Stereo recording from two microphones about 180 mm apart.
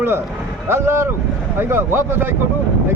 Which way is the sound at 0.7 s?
15° right (ahead or behind).